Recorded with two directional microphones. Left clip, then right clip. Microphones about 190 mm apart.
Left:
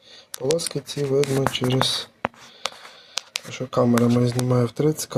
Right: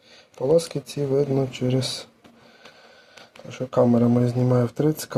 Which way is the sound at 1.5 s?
35° right (ahead or behind).